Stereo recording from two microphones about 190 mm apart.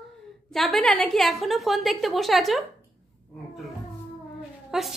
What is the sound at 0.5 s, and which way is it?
A woman's voice, centre (ahead or behind).